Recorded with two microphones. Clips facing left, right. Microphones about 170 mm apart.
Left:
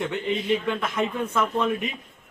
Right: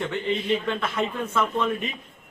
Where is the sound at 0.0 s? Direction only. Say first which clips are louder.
Even; 10° left (ahead or behind).